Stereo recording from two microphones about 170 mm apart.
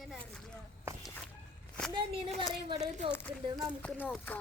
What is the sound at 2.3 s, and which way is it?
Speech, 35° right (ahead or behind).